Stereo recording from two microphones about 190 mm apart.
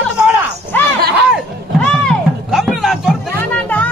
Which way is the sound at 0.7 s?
10° left (ahead or behind).